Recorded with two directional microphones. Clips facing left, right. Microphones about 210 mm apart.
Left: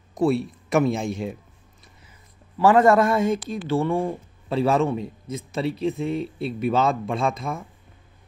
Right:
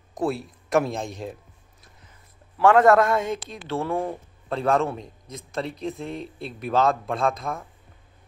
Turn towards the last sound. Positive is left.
turn(degrees=0)  # may be behind; listen again after turning